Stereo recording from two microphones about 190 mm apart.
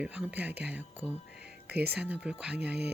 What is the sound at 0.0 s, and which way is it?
Speech, 5° right (ahead or behind).